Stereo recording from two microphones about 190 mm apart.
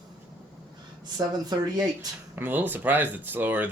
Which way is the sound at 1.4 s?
20° right (ahead or behind).